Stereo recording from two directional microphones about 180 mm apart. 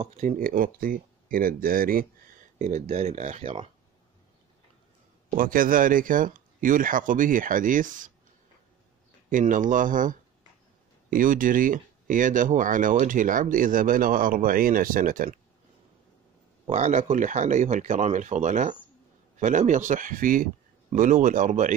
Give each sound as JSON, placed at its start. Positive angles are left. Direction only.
{"t": 0.0, "sound": "speech", "side_deg": -45}
{"t": 5.3, "sound": "speech", "side_deg": -50}
{"t": 9.3, "sound": "speech", "side_deg": -45}
{"t": 16.6, "sound": "speech", "side_deg": -40}